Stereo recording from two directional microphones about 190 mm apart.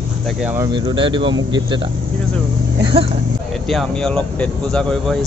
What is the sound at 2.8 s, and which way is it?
Speech, 25° right (ahead or behind).